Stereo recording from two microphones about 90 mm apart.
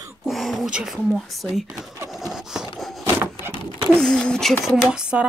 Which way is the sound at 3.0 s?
30° right (ahead or behind).